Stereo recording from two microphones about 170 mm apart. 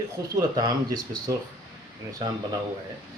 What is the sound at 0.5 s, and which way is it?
Speech, 25° right (ahead or behind).